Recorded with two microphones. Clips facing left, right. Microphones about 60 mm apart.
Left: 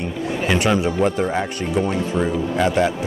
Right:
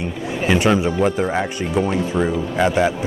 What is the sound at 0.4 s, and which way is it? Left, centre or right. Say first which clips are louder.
Speech: right 2 dB; centre.